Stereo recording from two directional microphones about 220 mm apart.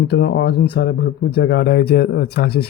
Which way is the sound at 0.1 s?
50° left (ahead or behind).